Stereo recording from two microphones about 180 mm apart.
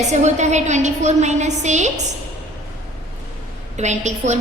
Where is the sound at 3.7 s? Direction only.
40° right (ahead or behind).